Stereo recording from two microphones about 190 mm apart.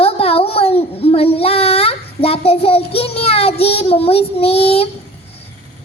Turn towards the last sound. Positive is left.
turn(degrees=30)  # may be behind; listen again after turning